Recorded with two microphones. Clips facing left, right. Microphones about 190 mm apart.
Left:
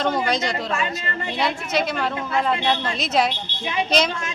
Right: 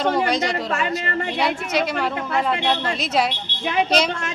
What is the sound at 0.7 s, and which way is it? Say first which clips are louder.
Speech: right 2 dB; 60° right (ahead or behind).